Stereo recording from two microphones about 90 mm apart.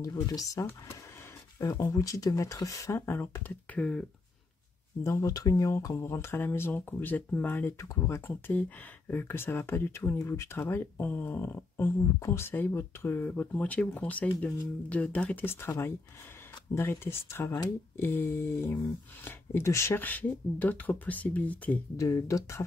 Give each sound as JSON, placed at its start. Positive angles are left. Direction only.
{"t": 0.0, "sound": "speech", "side_deg": 40}
{"t": 1.8, "sound": "speech", "side_deg": 40}
{"t": 5.0, "sound": "speech", "side_deg": 35}
{"t": 7.8, "sound": "speech", "side_deg": 35}
{"t": 15.4, "sound": "speech", "side_deg": 25}
{"t": 16.7, "sound": "speech", "side_deg": 25}
{"t": 20.0, "sound": "speech", "side_deg": 20}
{"t": 21.9, "sound": "speech", "side_deg": 35}